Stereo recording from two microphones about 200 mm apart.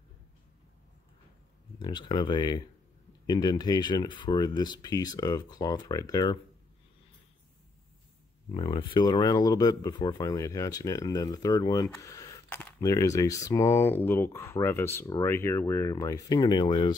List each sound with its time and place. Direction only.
1.8 s speech: 25° left (ahead or behind)
8.5 s speech: 25° left (ahead or behind)